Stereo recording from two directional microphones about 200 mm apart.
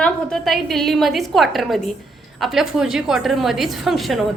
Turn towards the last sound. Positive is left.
turn(degrees=0)  # may be behind; listen again after turning